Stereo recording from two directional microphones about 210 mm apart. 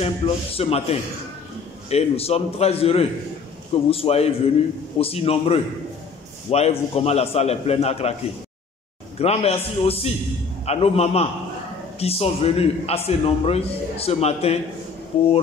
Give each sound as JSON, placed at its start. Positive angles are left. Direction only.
{"t": 0.0, "sound": "a man's voice", "side_deg": 30}
{"t": 9.2, "sound": "a man's voice", "side_deg": 30}